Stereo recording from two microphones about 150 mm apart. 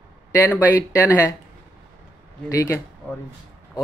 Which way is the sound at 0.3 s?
15° left (ahead or behind).